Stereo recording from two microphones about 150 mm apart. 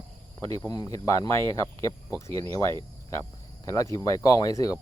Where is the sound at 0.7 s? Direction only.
25° left (ahead or behind).